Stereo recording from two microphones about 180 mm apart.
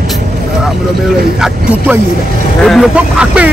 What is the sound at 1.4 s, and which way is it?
Speech, 5° right (ahead or behind).